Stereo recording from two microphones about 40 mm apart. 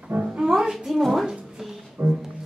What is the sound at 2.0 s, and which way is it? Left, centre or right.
Speech, right.